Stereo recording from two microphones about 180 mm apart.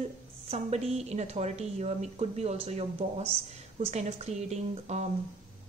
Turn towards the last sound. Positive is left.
turn(degrees=-40)  # may be behind; listen again after turning